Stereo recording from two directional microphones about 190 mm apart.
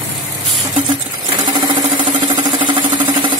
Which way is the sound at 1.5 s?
25° right (ahead or behind).